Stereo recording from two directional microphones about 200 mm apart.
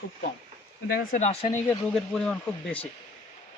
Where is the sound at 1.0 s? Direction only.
40° left (ahead or behind).